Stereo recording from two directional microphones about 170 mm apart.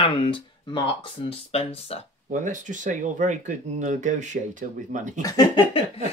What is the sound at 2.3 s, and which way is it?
Speech, 50° right (ahead or behind).